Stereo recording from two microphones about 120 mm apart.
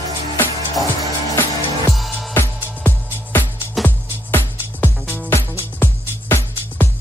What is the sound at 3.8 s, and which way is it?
Music, centre (ahead or behind).